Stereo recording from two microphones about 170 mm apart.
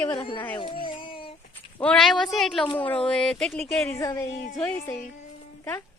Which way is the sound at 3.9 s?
20° left (ahead or behind).